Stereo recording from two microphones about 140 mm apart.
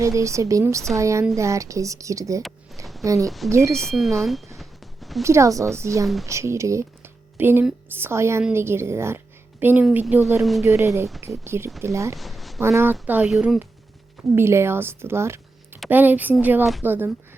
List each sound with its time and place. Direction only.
0.0 s speech: 20° right (ahead or behind)
3.2 s speech: centre (ahead or behind)
3.5 s speech: 20° right (ahead or behind)
3.8 s a sound: centre (ahead or behind)
5.2 s a woman's voice: 20° right (ahead or behind)
10.4 s speech: centre (ahead or behind)
10.7 s speech: 20° right (ahead or behind)
12.1 s speech: centre (ahead or behind)
12.5 s speech: 20° right (ahead or behind); by 13.6 s centre (ahead or behind)
14.3 s speech: 20° right (ahead or behind)